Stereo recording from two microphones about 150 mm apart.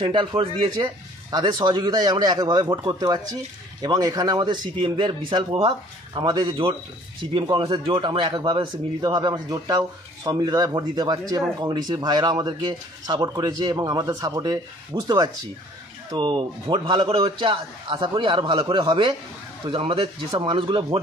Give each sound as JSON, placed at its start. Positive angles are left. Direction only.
{"t": 0.0, "sound": "a man's voice", "side_deg": -30}